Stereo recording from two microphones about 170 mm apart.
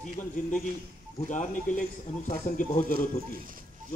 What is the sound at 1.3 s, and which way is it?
Speech, 50° left (ahead or behind).